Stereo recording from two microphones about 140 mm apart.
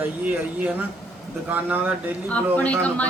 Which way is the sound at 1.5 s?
15° right (ahead or behind).